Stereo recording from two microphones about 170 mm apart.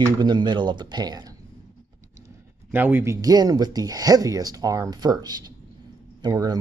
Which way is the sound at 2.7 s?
10° right (ahead or behind).